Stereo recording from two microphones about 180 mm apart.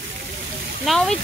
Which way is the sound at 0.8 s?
5° left (ahead or behind).